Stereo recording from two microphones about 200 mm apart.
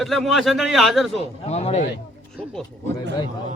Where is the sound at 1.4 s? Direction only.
30° left (ahead or behind).